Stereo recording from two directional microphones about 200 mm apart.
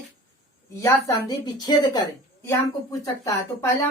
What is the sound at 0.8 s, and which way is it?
Speech, 15° left (ahead or behind).